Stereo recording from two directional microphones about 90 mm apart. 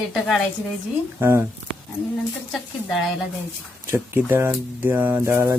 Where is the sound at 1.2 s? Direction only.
25° right (ahead or behind).